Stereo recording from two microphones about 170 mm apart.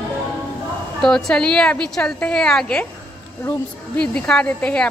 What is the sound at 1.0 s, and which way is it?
A woman's voice, 5° left (ahead or behind).